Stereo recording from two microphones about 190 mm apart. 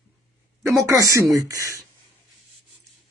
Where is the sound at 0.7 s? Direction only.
15° right (ahead or behind).